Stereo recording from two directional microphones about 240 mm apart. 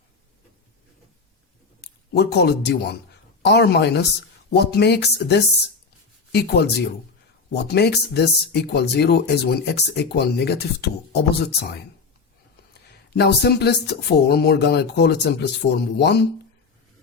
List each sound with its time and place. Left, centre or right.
2.1 s speech: left
13.1 s speech: left